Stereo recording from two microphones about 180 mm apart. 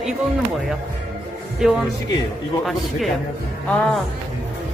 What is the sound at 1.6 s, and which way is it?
Speech, 5° right (ahead or behind).